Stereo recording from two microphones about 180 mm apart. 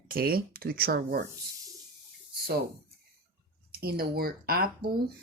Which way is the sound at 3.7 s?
60° right (ahead or behind).